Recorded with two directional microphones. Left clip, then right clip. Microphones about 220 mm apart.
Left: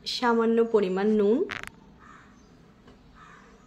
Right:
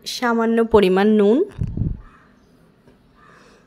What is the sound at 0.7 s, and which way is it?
Speech, 40° right (ahead or behind).